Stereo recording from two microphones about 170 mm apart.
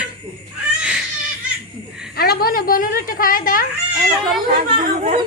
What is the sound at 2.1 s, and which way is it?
A woman's voice, 65° left (ahead or behind).